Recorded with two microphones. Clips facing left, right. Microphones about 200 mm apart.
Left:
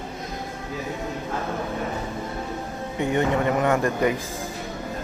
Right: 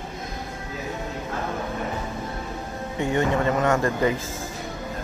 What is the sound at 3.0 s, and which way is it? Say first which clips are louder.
Speech: even; 20° left (ahead or behind).